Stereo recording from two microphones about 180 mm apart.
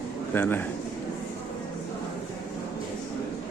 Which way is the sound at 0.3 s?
10° left (ahead or behind).